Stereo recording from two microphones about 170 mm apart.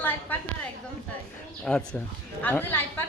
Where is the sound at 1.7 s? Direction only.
5° left (ahead or behind).